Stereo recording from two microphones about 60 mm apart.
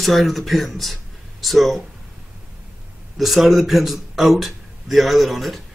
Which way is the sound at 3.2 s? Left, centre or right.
Centre.